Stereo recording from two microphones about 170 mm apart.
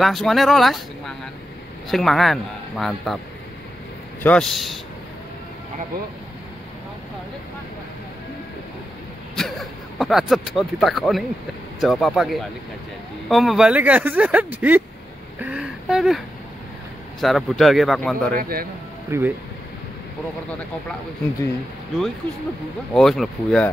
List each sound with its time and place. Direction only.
0.0 s a man's voice: centre (ahead or behind)
4.2 s a man's voice: 5° left (ahead or behind)
9.3 s a man's voice: centre (ahead or behind)
15.4 s a sound: 5° right (ahead or behind)
17.2 s a man's voice: centre (ahead or behind)
18.3 s a man's voice: 60° right (ahead or behind)
19.0 s speech: 15° right (ahead or behind)
22.9 s a man's voice: centre (ahead or behind)